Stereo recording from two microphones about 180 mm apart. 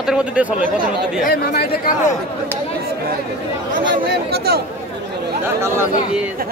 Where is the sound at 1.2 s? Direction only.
60° left (ahead or behind).